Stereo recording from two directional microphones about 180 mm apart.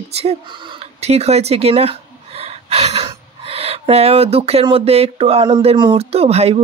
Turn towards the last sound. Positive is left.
turn(degrees=-35)  # may be behind; listen again after turning